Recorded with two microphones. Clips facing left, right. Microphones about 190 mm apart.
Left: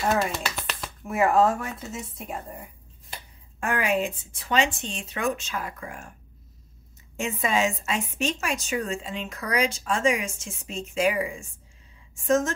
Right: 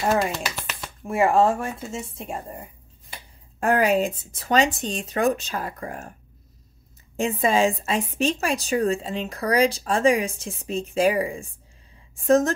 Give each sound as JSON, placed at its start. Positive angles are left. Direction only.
{"t": 0.3, "sound": "a sound", "side_deg": 0}
{"t": 1.0, "sound": "speech", "side_deg": -30}
{"t": 3.5, "sound": "a woman's voice", "side_deg": -40}
{"t": 7.2, "sound": "a woman's voice", "side_deg": -30}